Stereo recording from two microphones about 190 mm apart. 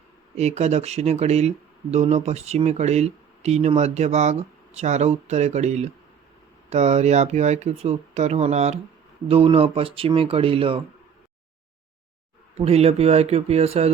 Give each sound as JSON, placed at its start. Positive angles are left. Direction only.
{"t": 0.3, "sound": "speech", "side_deg": -35}
{"t": 12.5, "sound": "speech", "side_deg": -35}